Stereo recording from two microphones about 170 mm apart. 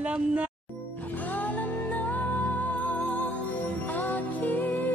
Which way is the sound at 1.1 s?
10° left (ahead or behind).